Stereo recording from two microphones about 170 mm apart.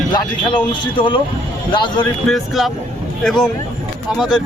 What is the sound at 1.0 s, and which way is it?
Speech, 30° left (ahead or behind).